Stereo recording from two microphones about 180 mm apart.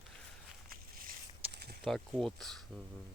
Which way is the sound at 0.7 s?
55° right (ahead or behind).